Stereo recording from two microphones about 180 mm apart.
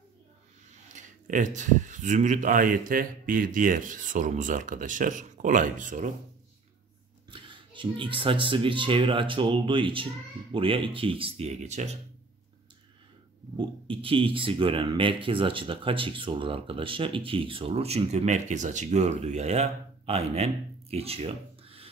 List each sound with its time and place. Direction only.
0.7 s speech: 45° right (ahead or behind)
7.2 s speech: 25° right (ahead or behind)
13.6 s speech: 30° right (ahead or behind)